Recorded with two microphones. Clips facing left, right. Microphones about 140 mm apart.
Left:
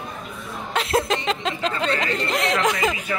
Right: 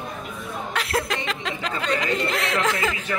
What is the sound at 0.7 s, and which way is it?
Speech, 25° left (ahead or behind).